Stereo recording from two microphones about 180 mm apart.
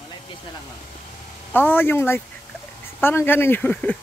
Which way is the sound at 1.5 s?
10° left (ahead or behind).